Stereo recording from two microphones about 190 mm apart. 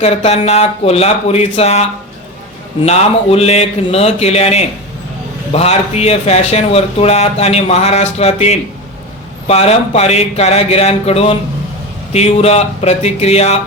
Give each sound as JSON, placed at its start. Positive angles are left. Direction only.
{"t": 0.0, "sound": "speech", "side_deg": 35}